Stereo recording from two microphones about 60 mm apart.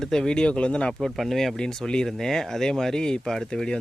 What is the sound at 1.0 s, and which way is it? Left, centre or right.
Speech, centre.